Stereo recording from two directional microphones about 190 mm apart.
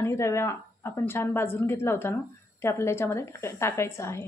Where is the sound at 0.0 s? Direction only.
15° left (ahead or behind).